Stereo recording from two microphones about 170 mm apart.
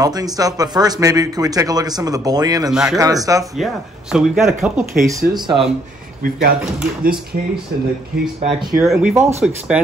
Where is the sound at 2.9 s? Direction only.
20° right (ahead or behind).